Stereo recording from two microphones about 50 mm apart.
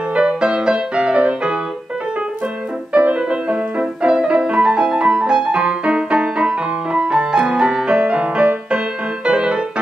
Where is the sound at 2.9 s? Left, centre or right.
Right.